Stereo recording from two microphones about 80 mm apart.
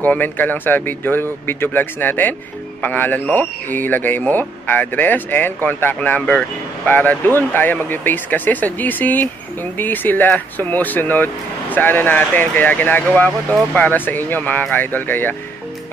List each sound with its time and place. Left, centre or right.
0.0 s speech: left